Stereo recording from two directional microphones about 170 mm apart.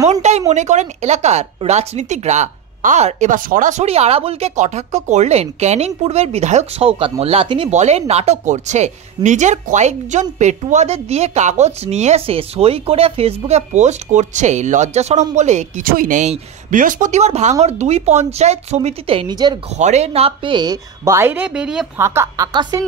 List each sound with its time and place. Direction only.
0.1 s speech: 40° right (ahead or behind); by 19.6 s 25° right (ahead or behind)
19.8 s a woman's voice: 40° right (ahead or behind); by 21.8 s 5° right (ahead or behind)
21.9 s a woman's voice: 15° right (ahead or behind)